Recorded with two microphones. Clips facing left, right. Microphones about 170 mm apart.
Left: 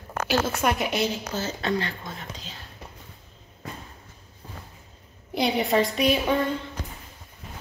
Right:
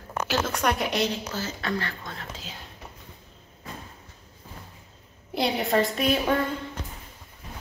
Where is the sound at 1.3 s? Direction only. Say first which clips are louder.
Left 3 dB; 20° left (ahead or behind).